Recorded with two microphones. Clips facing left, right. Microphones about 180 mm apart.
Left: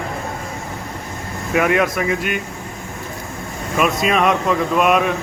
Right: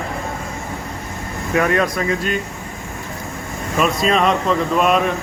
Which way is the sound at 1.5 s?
15° left (ahead or behind).